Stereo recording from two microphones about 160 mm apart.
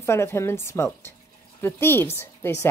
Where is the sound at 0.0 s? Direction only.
15° left (ahead or behind).